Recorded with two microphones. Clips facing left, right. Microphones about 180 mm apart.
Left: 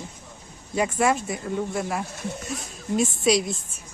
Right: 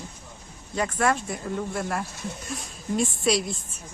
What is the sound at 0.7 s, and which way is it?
Speech, 10° left (ahead or behind).